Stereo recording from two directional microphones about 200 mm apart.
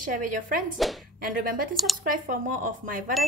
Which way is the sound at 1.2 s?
45° right (ahead or behind).